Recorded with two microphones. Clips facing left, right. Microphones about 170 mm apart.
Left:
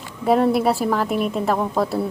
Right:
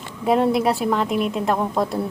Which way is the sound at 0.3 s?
Centre (ahead or behind).